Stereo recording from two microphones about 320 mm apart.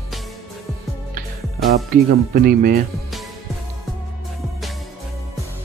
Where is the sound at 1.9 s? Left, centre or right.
Right.